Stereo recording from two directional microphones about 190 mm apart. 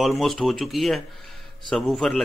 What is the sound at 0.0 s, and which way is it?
Speech, centre (ahead or behind).